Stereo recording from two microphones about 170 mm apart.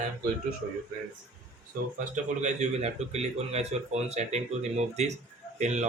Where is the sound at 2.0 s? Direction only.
45° right (ahead or behind).